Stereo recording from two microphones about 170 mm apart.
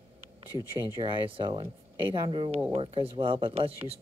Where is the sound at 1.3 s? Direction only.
25° right (ahead or behind).